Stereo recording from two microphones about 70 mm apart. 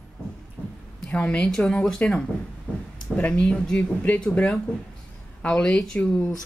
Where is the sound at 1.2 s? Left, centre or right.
Centre.